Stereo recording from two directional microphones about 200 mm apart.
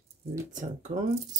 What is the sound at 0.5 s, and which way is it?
Speech, 40° right (ahead or behind).